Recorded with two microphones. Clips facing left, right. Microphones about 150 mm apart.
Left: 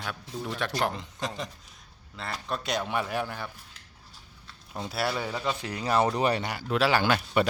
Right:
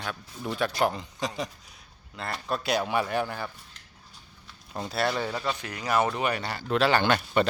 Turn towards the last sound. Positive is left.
turn(degrees=5)  # may be behind; listen again after turning